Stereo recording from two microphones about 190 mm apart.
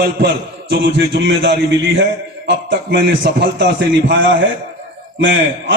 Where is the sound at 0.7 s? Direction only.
65° right (ahead or behind).